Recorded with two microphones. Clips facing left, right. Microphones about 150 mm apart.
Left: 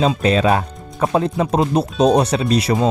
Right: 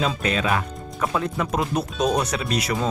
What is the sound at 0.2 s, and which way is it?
Speech, 30° left (ahead or behind).